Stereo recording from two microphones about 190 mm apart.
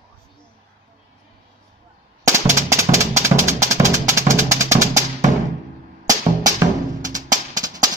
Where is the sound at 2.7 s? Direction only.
15° right (ahead or behind).